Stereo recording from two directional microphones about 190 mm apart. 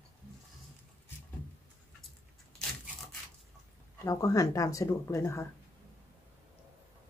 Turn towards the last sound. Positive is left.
turn(degrees=15)  # may be behind; listen again after turning